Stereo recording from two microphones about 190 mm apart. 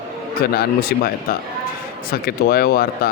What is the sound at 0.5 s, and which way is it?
Speech, 55° left (ahead or behind).